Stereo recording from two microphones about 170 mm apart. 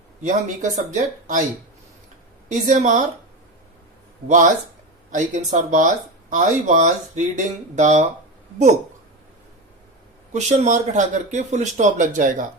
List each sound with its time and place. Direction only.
0.2 s speech: 45° right (ahead or behind)
2.5 s speech: 45° right (ahead or behind)
4.3 s speech: 50° right (ahead or behind)
10.3 s speech: 45° right (ahead or behind)